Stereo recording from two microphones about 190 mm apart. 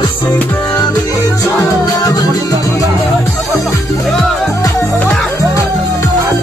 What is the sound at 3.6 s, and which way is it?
Music, centre (ahead or behind).